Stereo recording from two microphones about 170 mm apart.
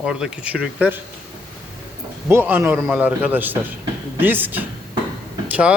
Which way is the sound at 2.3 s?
15° right (ahead or behind).